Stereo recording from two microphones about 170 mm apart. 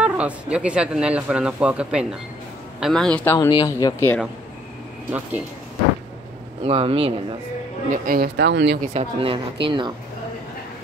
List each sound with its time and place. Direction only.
0.0 s speech: 5° right (ahead or behind)
3.3 s speech: 25° left (ahead or behind)
6.6 s speech: 35° right (ahead or behind)
7.9 s speech: 60° right (ahead or behind); by 8.7 s 90° right
8.8 s speech: 40° right (ahead or behind)